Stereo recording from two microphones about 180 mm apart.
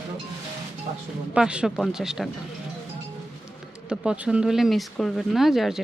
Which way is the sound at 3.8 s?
5° right (ahead or behind).